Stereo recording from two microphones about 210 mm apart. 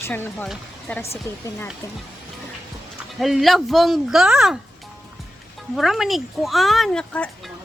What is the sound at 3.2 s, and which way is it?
Speech, centre (ahead or behind).